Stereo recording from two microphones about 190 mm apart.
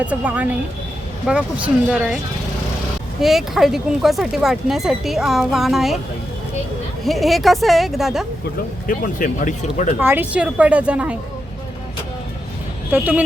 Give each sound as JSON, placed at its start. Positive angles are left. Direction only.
{"t": 0.0, "sound": "a woman's voice", "side_deg": -5}
{"t": 3.2, "sound": "speech", "side_deg": 0}
{"t": 7.0, "sound": "speech", "side_deg": 0}
{"t": 8.9, "sound": "speech", "side_deg": 45}
{"t": 10.0, "sound": "a woman's voice", "side_deg": -10}
{"t": 12.9, "sound": "a woman's voice", "side_deg": -10}